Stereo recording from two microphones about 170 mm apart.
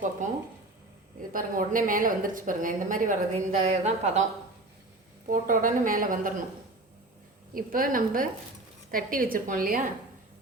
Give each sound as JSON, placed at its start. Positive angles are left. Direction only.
{"t": 0.2, "sound": "a sound", "side_deg": -45}
{"t": 1.3, "sound": "a woman's voice", "side_deg": -55}
{"t": 5.3, "sound": "a woman's voice", "side_deg": -50}
{"t": 7.5, "sound": "a woman's voice", "side_deg": -55}